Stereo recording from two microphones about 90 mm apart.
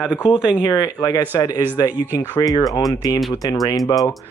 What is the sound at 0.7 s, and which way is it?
Speech, 40° left (ahead or behind).